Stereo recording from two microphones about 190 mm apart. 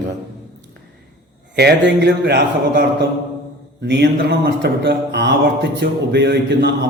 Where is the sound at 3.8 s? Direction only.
60° right (ahead or behind).